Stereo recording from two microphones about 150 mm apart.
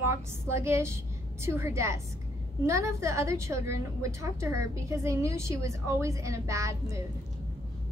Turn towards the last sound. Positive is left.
turn(degrees=-20)  # may be behind; listen again after turning